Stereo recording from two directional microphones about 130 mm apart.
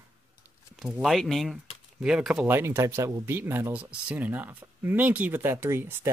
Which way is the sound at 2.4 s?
20° right (ahead or behind).